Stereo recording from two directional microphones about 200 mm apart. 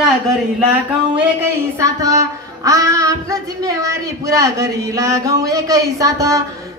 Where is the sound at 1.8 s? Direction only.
15° right (ahead or behind).